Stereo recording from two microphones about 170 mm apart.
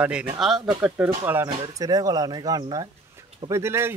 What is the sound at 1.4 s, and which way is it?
Speech, 20° right (ahead or behind).